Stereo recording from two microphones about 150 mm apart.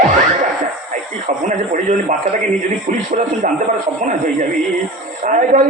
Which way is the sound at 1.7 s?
55° right (ahead or behind).